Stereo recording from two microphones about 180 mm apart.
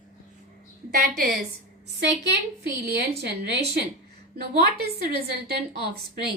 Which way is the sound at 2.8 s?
65° right (ahead or behind).